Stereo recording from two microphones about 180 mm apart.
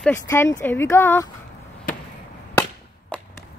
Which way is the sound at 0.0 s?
15° left (ahead or behind).